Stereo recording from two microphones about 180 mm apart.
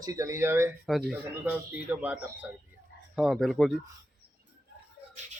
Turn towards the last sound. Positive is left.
turn(degrees=0)  # may be behind; listen again after turning